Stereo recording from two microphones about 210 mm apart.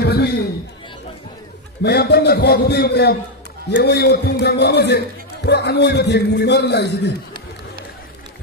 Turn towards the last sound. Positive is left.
turn(degrees=55)  # may be behind; listen again after turning